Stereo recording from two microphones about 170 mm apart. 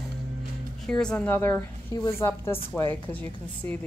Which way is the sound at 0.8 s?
5° left (ahead or behind).